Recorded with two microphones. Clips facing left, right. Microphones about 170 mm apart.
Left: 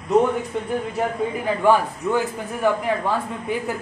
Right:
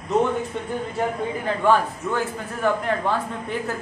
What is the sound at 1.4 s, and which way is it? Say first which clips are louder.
Speech: left 1 dB; 15° left (ahead or behind).